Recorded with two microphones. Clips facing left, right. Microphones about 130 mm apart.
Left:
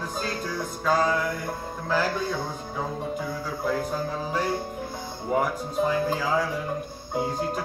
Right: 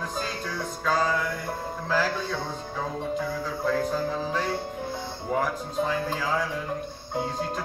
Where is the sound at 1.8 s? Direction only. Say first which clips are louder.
Left 1 dB; centre (ahead or behind).